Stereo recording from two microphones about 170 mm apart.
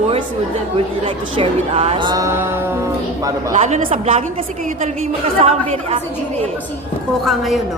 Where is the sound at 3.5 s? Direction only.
45° right (ahead or behind).